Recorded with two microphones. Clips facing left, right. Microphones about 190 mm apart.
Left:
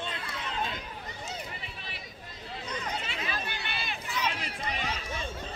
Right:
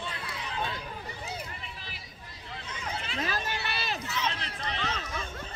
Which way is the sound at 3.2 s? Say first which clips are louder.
Right 3 dB; 40° right (ahead or behind).